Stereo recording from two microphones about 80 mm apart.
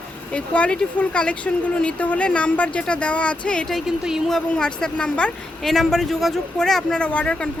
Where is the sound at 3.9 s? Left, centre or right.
Centre.